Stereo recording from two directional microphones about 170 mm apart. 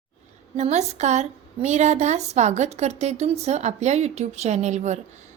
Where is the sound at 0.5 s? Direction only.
40° right (ahead or behind).